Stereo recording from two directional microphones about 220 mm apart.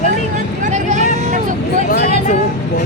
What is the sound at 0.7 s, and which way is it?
Vehicle, 35° right (ahead or behind).